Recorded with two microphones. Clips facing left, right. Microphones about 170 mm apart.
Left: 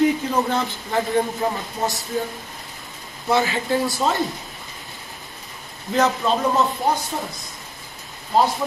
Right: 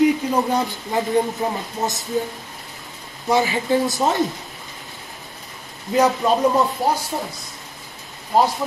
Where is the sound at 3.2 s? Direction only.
15° right (ahead or behind).